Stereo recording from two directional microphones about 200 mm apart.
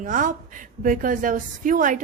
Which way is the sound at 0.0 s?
40° right (ahead or behind).